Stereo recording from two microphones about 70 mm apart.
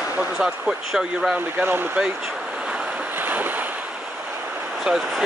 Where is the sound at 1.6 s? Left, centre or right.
Right.